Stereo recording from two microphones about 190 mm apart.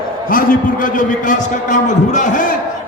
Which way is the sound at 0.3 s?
45° left (ahead or behind).